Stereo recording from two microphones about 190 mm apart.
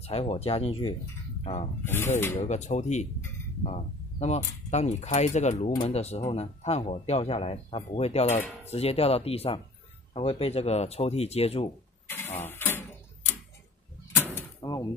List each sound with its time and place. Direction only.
0.0 s speech: 30° left (ahead or behind)
2.1 s speech: 10° left (ahead or behind)
2.4 s speech: 35° left (ahead or behind)
12.1 s printer: 10° left (ahead or behind)
14.1 s door: 10° left (ahead or behind)